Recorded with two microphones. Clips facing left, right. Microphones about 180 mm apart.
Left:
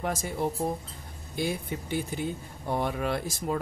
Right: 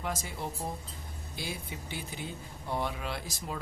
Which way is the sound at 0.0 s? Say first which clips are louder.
Left 7 dB; 50° left (ahead or behind).